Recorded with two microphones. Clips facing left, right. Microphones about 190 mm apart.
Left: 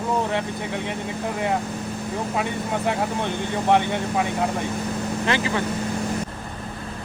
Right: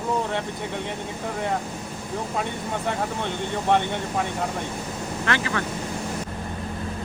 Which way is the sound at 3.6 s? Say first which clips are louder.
Left 3 dB; 10° left (ahead or behind).